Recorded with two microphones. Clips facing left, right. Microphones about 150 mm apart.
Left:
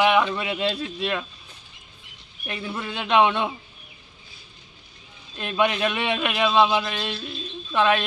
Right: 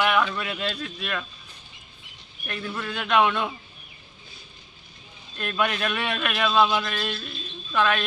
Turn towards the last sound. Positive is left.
turn(degrees=25)  # may be behind; listen again after turning